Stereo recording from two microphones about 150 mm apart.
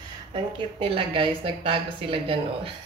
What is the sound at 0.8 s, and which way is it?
A woman's voice, 35° right (ahead or behind).